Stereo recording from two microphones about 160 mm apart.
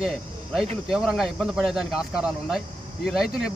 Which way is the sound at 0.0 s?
5° right (ahead or behind).